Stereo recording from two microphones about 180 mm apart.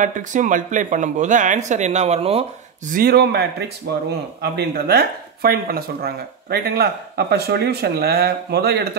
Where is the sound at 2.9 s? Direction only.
55° right (ahead or behind).